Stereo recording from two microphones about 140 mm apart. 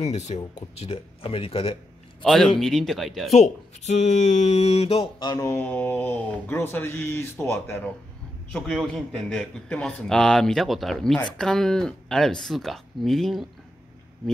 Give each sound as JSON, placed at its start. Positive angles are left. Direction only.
{"t": 0.0, "sound": "speech", "side_deg": 55}
{"t": 2.2, "sound": "a man's voice", "side_deg": 0}
{"t": 3.3, "sound": "speech", "side_deg": 55}
{"t": 5.2, "sound": "speech", "side_deg": 25}
{"t": 8.5, "sound": "a man's voice", "side_deg": 5}